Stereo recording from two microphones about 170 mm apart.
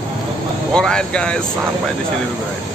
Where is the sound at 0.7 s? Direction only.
5° left (ahead or behind).